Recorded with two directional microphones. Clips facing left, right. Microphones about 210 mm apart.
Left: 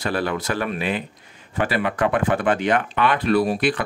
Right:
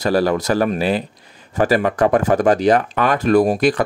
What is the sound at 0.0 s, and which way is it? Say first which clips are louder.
Speech: right 7 dB; 40° right (ahead or behind).